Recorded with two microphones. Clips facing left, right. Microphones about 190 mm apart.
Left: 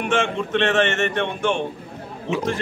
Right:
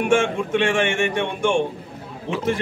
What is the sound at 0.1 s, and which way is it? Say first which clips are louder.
A man's voice: right 1 dB; 10° right (ahead or behind).